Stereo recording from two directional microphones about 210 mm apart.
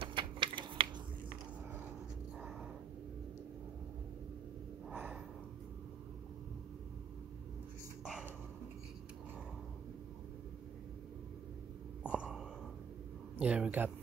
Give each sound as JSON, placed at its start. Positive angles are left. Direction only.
{"t": 0.0, "sound": "typing", "side_deg": -25}
{"t": 4.8, "sound": "gasp", "side_deg": -5}
{"t": 8.0, "sound": "dog", "side_deg": -5}
{"t": 12.1, "sound": "a sound", "side_deg": -5}
{"t": 13.4, "sound": "speech", "side_deg": -5}